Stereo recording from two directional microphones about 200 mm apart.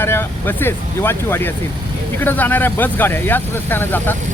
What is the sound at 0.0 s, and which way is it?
Speech, 10° left (ahead or behind).